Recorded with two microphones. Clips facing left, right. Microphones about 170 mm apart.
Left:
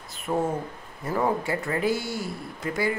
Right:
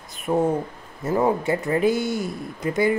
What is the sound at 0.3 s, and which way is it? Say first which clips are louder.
Speech: right 5 dB; 20° right (ahead or behind).